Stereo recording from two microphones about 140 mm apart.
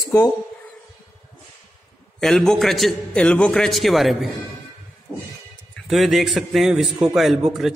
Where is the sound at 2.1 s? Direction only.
5° left (ahead or behind).